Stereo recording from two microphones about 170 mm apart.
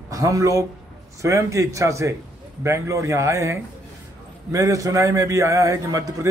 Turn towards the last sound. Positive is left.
turn(degrees=-20)  # may be behind; listen again after turning